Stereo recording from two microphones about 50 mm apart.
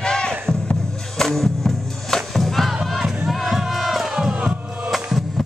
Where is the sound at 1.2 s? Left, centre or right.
Centre.